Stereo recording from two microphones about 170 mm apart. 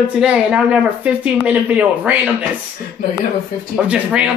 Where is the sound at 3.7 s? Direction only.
5° right (ahead or behind).